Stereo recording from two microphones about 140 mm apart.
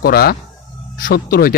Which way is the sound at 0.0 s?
90° left.